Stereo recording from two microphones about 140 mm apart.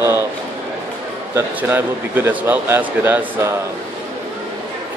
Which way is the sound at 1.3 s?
15° right (ahead or behind).